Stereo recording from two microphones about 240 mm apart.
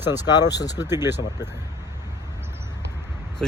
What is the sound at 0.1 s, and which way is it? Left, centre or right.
Speech, centre.